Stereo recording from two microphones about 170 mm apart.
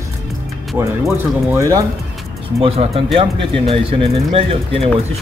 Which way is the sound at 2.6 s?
35° right (ahead or behind).